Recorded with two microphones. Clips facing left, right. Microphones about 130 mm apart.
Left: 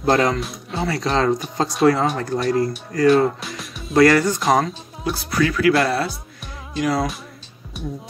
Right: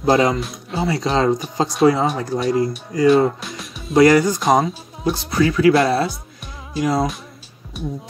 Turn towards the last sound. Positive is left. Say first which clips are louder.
# right 2 dB
turn(degrees=0)  # may be behind; listen again after turning